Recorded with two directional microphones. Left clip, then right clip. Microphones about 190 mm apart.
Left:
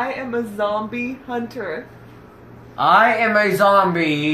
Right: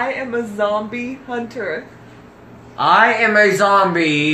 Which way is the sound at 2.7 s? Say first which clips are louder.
Right 1 dB; 25° left (ahead or behind).